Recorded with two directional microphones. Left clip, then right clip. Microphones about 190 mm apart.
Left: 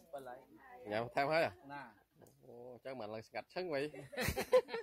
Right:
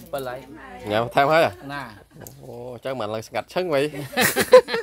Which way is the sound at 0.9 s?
5° left (ahead or behind).